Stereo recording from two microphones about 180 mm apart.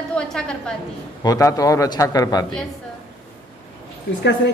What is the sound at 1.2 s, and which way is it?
A man's voice, 20° left (ahead or behind).